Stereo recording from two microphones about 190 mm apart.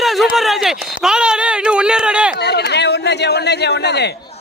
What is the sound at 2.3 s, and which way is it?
Chatter, 60° left (ahead or behind).